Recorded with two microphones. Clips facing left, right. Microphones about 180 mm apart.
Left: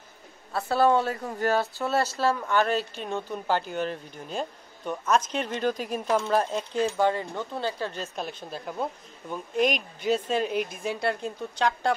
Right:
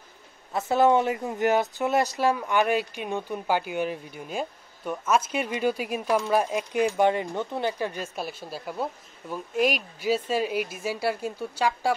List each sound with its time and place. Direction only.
0.5 s speech: 20° right (ahead or behind)